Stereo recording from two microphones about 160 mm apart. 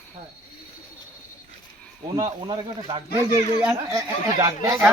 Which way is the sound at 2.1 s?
30° right (ahead or behind).